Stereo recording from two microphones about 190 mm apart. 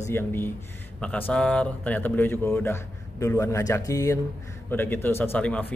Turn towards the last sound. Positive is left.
turn(degrees=5)  # may be behind; listen again after turning